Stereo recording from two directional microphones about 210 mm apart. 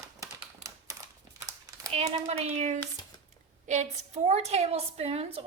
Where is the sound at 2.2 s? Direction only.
30° right (ahead or behind).